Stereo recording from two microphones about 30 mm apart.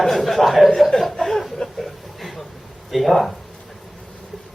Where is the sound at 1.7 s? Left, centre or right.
Centre.